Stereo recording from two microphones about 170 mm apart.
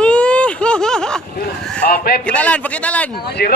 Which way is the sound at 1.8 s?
60° left (ahead or behind).